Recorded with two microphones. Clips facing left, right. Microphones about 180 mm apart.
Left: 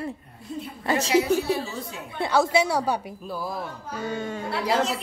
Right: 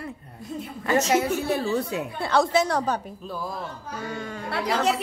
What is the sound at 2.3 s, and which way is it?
A woman's voice, 10° left (ahead or behind).